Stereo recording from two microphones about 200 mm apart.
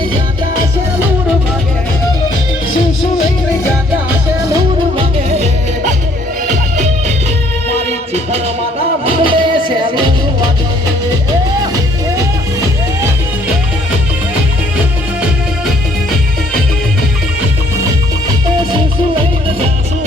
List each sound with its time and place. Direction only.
4.1 s music: 15° right (ahead or behind)
4.9 s music: 35° right (ahead or behind)
9.0 s music: 25° right (ahead or behind)
11.6 s music: 20° right (ahead or behind)